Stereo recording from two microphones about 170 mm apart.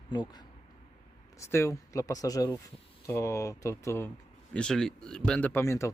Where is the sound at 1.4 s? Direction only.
15° left (ahead or behind).